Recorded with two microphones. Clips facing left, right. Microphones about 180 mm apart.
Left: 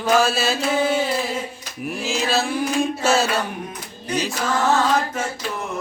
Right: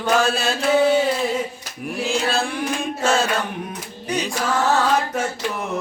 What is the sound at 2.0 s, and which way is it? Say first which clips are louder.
Mantra: even; 5° left (ahead or behind).